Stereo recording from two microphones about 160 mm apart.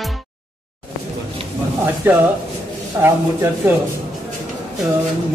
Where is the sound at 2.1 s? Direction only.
15° right (ahead or behind).